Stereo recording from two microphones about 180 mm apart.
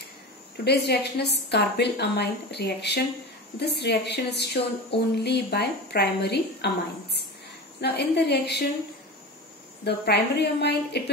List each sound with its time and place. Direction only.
0.7 s a woman's voice: 65° left (ahead or behind)
9.8 s a woman's voice: 65° left (ahead or behind)